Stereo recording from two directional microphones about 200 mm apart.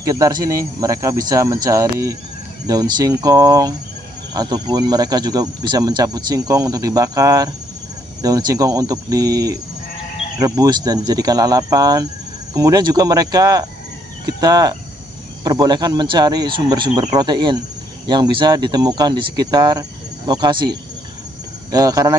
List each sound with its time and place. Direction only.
0.0 s speech: 15° right (ahead or behind)